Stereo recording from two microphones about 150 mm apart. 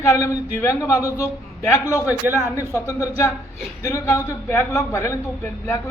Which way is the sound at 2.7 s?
20° left (ahead or behind).